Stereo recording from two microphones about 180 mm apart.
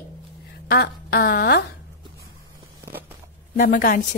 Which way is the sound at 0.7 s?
55° left (ahead or behind).